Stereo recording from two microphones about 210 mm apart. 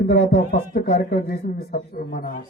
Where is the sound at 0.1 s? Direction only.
50° left (ahead or behind).